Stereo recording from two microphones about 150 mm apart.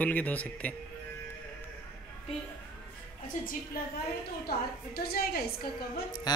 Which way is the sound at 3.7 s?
80° left.